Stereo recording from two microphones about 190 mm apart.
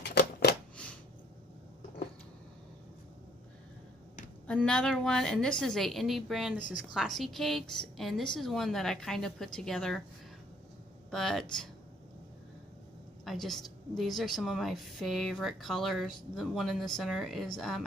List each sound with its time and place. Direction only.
0.0 s a sound: 60° left (ahead or behind)
4.5 s a woman's voice: 5° left (ahead or behind)
11.1 s speech: centre (ahead or behind)
13.2 s a woman's voice: centre (ahead or behind)